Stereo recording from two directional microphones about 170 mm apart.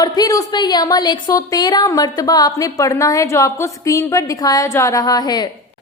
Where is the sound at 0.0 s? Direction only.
20° left (ahead or behind).